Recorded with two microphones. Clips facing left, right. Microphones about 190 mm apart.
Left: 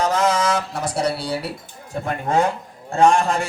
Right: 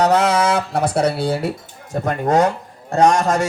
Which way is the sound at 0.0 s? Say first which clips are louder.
Right 4 dB; 65° right (ahead or behind).